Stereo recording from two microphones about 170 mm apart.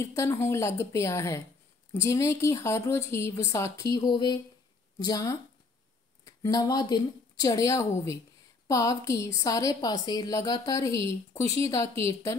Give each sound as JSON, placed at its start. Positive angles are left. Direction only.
{"t": 0.0, "sound": "a woman's voice", "side_deg": 15}